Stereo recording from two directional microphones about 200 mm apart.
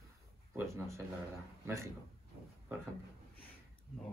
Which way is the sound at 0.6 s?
15° right (ahead or behind).